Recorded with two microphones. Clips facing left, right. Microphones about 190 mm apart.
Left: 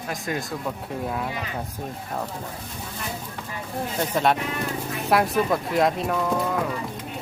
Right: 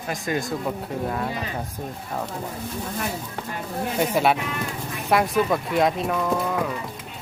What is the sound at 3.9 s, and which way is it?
Speech, 10° right (ahead or behind).